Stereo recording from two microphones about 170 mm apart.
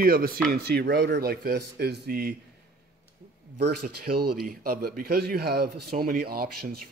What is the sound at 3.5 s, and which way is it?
A man's voice, 70° right (ahead or behind).